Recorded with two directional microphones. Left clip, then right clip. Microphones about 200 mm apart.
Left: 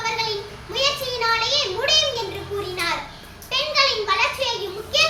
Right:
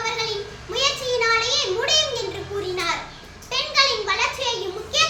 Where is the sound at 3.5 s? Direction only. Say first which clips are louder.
Even; 20° right (ahead or behind).